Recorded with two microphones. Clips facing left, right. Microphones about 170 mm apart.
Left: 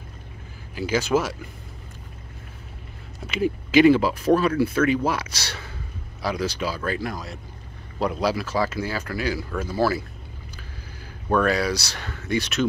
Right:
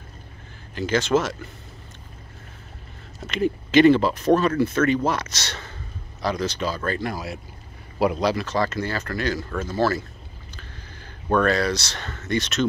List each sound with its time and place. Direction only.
0.7 s speech: 10° left (ahead or behind)
3.3 s speech: 5° left (ahead or behind)
11.2 s speech: 5° left (ahead or behind)